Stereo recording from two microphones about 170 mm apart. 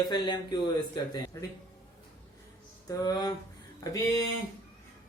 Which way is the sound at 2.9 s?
25° left (ahead or behind).